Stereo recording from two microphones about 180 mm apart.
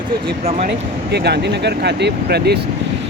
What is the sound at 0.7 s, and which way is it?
Speech, 65° right (ahead or behind).